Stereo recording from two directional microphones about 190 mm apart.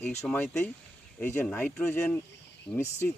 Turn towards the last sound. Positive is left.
turn(degrees=15)  # may be behind; listen again after turning